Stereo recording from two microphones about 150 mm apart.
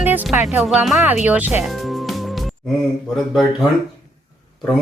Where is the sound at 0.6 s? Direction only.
Centre (ahead or behind).